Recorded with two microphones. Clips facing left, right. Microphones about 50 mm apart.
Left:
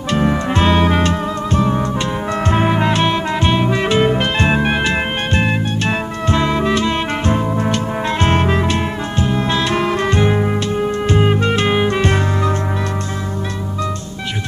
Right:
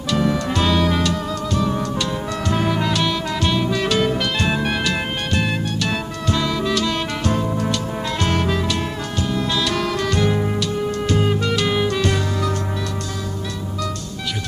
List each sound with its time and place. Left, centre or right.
0.1 s music: left